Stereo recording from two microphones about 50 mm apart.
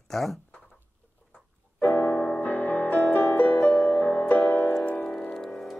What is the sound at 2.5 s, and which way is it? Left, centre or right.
Music, left.